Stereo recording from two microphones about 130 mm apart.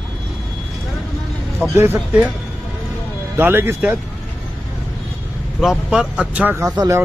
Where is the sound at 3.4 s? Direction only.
15° right (ahead or behind).